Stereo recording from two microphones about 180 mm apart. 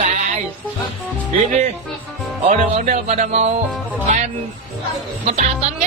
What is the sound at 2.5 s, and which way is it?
Music, 40° right (ahead or behind).